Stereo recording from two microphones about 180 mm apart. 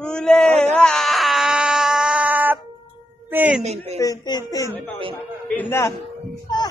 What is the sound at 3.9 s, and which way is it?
A man's voice, 20° left (ahead or behind).